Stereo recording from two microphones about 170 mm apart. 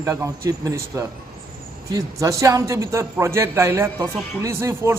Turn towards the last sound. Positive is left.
turn(degrees=-15)  # may be behind; listen again after turning